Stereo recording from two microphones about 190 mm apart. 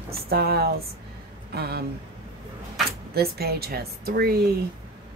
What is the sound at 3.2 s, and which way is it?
A woman's voice, 55° right (ahead or behind).